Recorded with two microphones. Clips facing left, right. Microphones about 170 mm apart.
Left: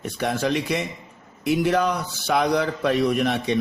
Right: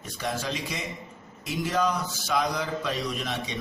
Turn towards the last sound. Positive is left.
turn(degrees=60)  # may be behind; listen again after turning